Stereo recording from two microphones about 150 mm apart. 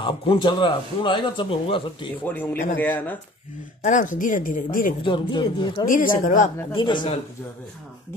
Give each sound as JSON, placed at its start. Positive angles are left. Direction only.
{"t": 0.0, "sound": "speech", "side_deg": 30}
{"t": 2.2, "sound": "speech", "side_deg": 15}
{"t": 3.8, "sound": "speech", "side_deg": 60}
{"t": 5.0, "sound": "speech", "side_deg": 30}
{"t": 5.9, "sound": "a woman's voice", "side_deg": 65}
{"t": 6.7, "sound": "speech", "side_deg": 30}